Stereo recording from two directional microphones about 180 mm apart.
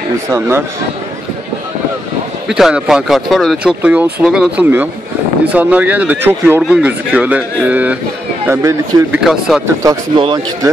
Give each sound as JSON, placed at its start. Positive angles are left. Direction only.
{"t": 0.3, "sound": "speech", "side_deg": -15}
{"t": 2.4, "sound": "speech", "side_deg": -5}
{"t": 9.2, "sound": "speech", "side_deg": 0}
{"t": 9.8, "sound": "a man's voice", "side_deg": -25}